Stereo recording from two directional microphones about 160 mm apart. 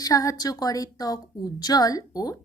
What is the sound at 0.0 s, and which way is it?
A woman's voice, 20° left (ahead or behind).